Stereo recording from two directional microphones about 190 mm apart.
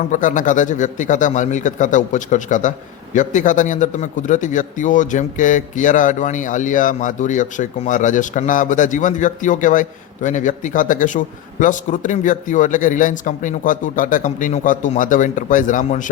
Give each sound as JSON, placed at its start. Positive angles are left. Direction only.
{"t": 0.1, "sound": "speech", "side_deg": 45}